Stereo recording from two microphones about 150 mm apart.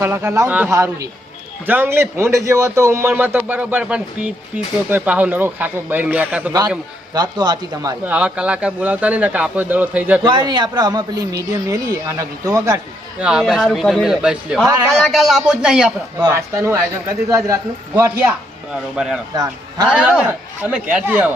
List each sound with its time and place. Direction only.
0.0 s a man's voice: 15° right (ahead or behind)
0.7 s a man's voice: 20° right (ahead or behind)
7.1 s a man's voice: 25° right (ahead or behind)
8.0 s a man's voice: 10° right (ahead or behind)
10.2 s a man's voice: 30° right (ahead or behind)
13.1 s a man's voice: 5° right (ahead or behind)
18.9 s a man's voice: 5° right (ahead or behind)